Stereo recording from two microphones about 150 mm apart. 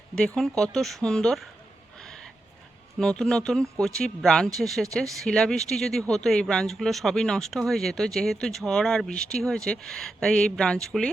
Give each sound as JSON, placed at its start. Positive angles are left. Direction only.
{"t": 0.2, "sound": "speech", "side_deg": 5}
{"t": 2.0, "sound": "a sound", "side_deg": 5}
{"t": 3.0, "sound": "speech", "side_deg": 5}